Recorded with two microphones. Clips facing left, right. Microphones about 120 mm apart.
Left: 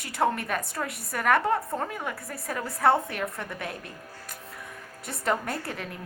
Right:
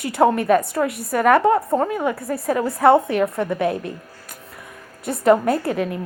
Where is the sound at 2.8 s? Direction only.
65° right (ahead or behind).